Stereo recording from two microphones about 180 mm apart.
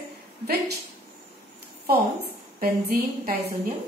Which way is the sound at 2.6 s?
55° right (ahead or behind).